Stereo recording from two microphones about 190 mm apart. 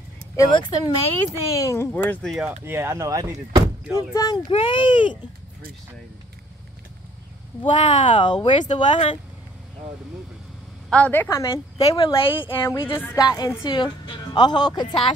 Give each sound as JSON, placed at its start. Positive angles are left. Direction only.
{"t": 0.4, "sound": "a woman's voice", "side_deg": 20}
{"t": 2.6, "sound": "speech", "side_deg": -15}
{"t": 3.9, "sound": "speech", "side_deg": 20}
{"t": 4.5, "sound": "a woman's voice", "side_deg": 30}
{"t": 7.6, "sound": "a woman's voice", "side_deg": 25}
{"t": 8.6, "sound": "speech", "side_deg": 40}
{"t": 10.9, "sound": "speech", "side_deg": 10}
{"t": 11.9, "sound": "a woman's voice", "side_deg": 25}
{"t": 12.6, "sound": "a woman's voice", "side_deg": 15}